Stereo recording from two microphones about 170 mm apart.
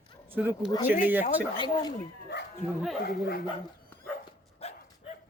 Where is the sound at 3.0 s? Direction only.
65° left (ahead or behind).